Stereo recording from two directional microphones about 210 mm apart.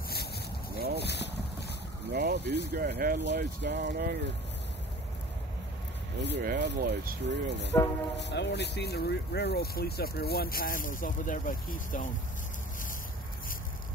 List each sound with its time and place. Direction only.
0.7 s boat: 50° right (ahead or behind)
1.0 s boat: 55° left (ahead or behind)
2.1 s speech: 50° right (ahead or behind)
6.2 s speech: 50° right (ahead or behind)
8.2 s speech: 55° left (ahead or behind); by 12.1 s 40° left (ahead or behind)